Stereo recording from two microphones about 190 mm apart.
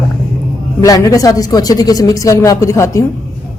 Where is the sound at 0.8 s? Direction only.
20° left (ahead or behind).